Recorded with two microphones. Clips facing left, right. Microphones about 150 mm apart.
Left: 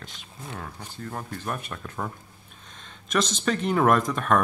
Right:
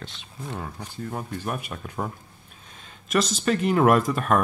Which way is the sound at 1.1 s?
10° right (ahead or behind).